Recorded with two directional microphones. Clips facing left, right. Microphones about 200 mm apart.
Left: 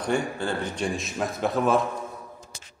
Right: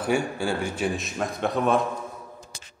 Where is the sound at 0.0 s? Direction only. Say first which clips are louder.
Right 1 dB; 10° right (ahead or behind).